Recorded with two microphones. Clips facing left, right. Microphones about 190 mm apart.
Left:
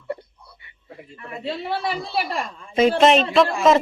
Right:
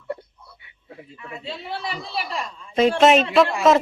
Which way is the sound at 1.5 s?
55° left (ahead or behind).